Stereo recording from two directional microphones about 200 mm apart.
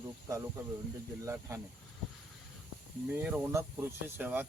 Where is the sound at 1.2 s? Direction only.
15° right (ahead or behind).